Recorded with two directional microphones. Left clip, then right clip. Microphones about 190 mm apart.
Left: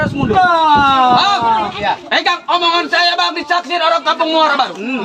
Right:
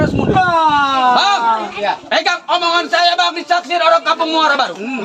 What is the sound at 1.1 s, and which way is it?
A man's voice, 25° right (ahead or behind).